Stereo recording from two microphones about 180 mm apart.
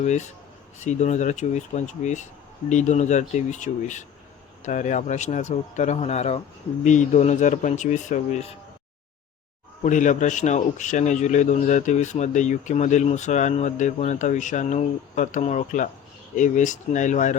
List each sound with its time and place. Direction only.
0.0 s speech: 40° left (ahead or behind)
9.8 s speech: 45° left (ahead or behind)